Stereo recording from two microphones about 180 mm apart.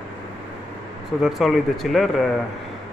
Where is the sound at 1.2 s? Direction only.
Centre (ahead or behind).